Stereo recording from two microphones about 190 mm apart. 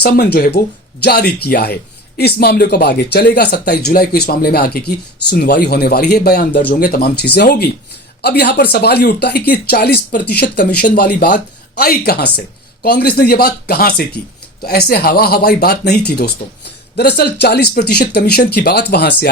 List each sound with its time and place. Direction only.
0.0 s speech: 55° left (ahead or behind)